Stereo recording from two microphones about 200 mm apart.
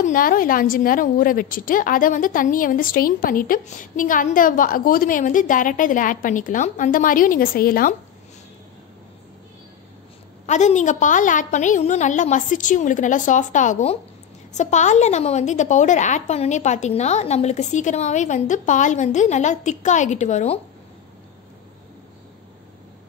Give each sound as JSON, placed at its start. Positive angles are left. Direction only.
{"t": 0.0, "sound": "a woman's voice", "side_deg": 45}
{"t": 10.4, "sound": "a woman's voice", "side_deg": 35}